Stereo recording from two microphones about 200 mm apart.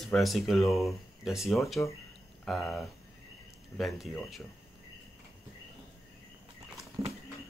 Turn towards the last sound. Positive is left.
turn(degrees=-30)  # may be behind; listen again after turning